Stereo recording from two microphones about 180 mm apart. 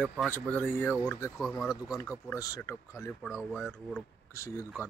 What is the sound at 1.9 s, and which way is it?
Speech, 15° left (ahead or behind).